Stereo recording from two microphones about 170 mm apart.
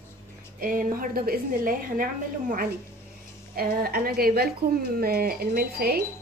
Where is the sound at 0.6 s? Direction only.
55° right (ahead or behind).